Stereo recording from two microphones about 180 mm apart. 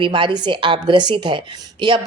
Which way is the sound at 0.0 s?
25° right (ahead or behind).